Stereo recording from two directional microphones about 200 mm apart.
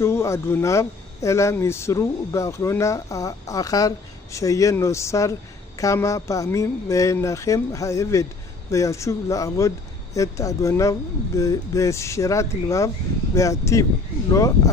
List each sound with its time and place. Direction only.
0.0 s speech: 15° left (ahead or behind)